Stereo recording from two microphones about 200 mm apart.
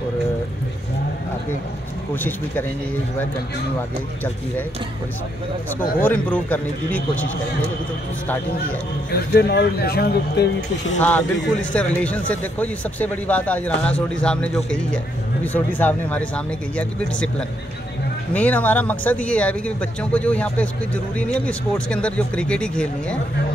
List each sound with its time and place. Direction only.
2.1 s speech: 10° left (ahead or behind)
6.0 s speech: 10° left (ahead or behind)
9.1 s speech: 55° left (ahead or behind)
11.0 s speech: 10° left (ahead or behind)